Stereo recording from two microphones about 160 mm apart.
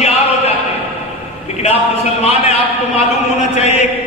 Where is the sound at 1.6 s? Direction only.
40° left (ahead or behind).